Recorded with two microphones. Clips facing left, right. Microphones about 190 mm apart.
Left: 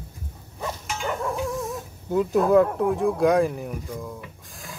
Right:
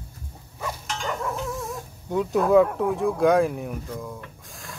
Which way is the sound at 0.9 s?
5° left (ahead or behind).